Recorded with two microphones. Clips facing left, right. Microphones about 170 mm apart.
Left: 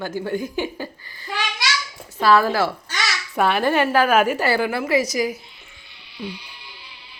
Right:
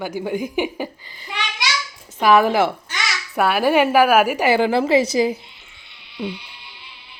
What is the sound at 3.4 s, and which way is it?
A woman's voice, 5° right (ahead or behind).